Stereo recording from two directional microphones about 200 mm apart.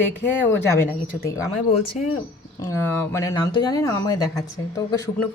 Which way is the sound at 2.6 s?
10° left (ahead or behind).